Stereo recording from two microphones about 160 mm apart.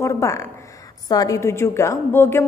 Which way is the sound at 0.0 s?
20° left (ahead or behind).